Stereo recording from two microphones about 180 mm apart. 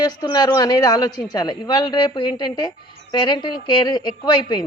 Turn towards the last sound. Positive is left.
turn(degrees=25)  # may be behind; listen again after turning